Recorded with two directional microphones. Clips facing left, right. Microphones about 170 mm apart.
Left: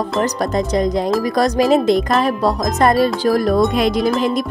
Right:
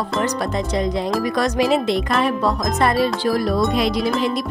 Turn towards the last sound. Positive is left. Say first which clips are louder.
# left 4 dB
turn(degrees=50)  # may be behind; listen again after turning